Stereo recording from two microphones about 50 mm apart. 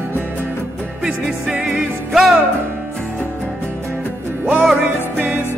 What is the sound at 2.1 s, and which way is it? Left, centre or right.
Music, centre.